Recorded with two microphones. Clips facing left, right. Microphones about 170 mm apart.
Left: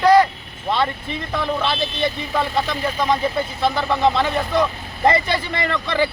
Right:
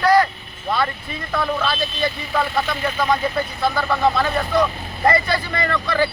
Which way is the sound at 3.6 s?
20° left (ahead or behind).